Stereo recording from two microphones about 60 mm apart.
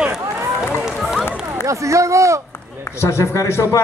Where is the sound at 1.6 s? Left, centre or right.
Right.